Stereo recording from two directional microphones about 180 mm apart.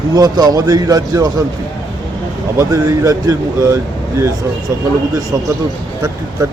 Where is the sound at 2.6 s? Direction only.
20° right (ahead or behind).